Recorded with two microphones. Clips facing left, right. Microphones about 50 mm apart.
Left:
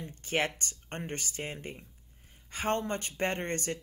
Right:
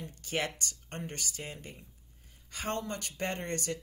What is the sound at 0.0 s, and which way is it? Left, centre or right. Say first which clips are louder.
Speech: left 3 dB; left.